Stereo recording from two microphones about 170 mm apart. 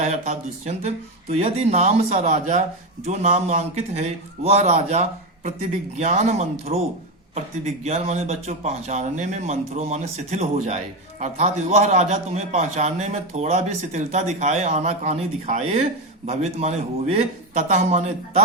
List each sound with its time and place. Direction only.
0.0 s a man's voice: 40° right (ahead or behind)